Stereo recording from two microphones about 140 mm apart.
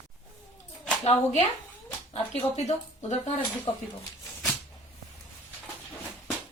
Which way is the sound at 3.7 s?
30° left (ahead or behind).